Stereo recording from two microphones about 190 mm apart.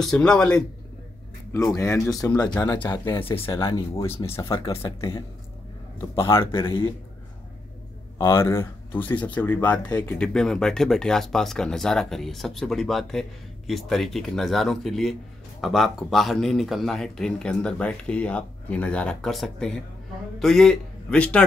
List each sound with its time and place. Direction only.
0.0 s speech: 5° left (ahead or behind)
1.5 s speech: 15° left (ahead or behind)
4.0 s speech: 15° left (ahead or behind)
6.2 s speech: 15° left (ahead or behind)
6.6 s speech: 25° left (ahead or behind)
8.2 s speech: 15° left (ahead or behind)